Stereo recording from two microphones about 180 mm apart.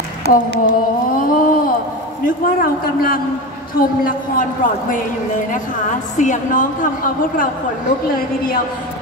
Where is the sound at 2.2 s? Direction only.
50° left (ahead or behind).